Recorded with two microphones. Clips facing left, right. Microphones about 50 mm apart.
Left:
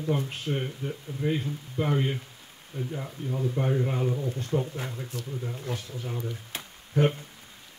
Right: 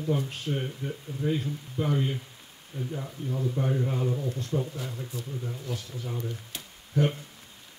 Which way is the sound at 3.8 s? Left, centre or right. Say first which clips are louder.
Left 1 dB; left.